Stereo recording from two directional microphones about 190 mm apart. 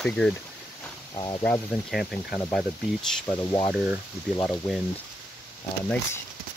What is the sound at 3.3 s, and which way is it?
Speech, 20° left (ahead or behind).